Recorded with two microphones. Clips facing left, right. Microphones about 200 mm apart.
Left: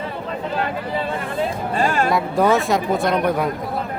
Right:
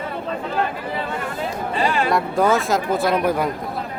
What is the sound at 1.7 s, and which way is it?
Speech, 45° left (ahead or behind).